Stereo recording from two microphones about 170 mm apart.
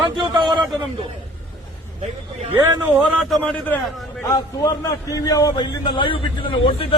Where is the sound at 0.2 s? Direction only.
30° right (ahead or behind).